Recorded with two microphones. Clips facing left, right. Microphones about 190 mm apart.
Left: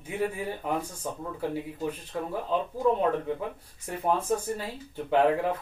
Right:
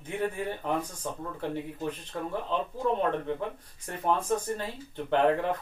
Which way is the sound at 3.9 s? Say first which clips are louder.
Left 1 dB; 10° left (ahead or behind).